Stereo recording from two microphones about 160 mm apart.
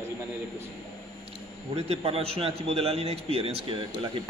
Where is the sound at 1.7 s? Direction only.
40° right (ahead or behind).